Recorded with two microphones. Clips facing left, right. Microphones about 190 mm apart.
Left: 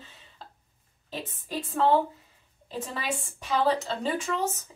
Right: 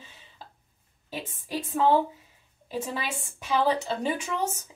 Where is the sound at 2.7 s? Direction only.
10° right (ahead or behind).